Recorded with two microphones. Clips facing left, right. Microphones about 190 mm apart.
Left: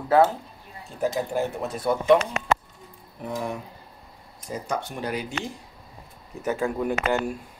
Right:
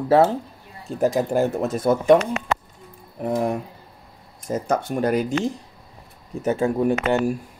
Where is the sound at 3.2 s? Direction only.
55° right (ahead or behind).